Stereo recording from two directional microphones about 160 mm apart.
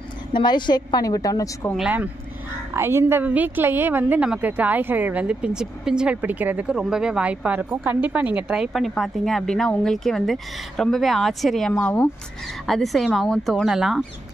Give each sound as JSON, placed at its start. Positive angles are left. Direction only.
{"t": 0.3, "sound": "a woman's voice", "side_deg": 30}
{"t": 1.8, "sound": "a woman's voice", "side_deg": -10}